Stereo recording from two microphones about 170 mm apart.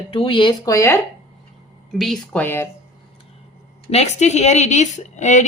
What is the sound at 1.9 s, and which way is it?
Speech, centre (ahead or behind).